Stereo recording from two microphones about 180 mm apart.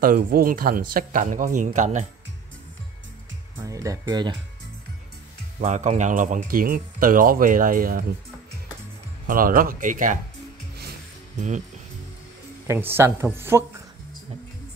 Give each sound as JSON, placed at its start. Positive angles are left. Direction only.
{"t": 0.0, "sound": "speech", "side_deg": -50}
{"t": 3.5, "sound": "speech", "side_deg": -20}
{"t": 5.6, "sound": "speech", "side_deg": -40}
{"t": 9.3, "sound": "speech", "side_deg": -50}
{"t": 11.3, "sound": "speech", "side_deg": -40}
{"t": 12.6, "sound": "speech", "side_deg": -15}